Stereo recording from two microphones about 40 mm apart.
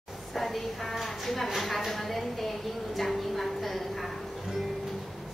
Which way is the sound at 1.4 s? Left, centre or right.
Centre.